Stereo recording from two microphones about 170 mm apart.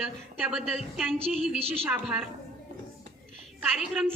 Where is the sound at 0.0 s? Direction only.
5° right (ahead or behind).